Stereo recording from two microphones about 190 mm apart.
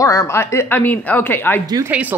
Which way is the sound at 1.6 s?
20° right (ahead or behind).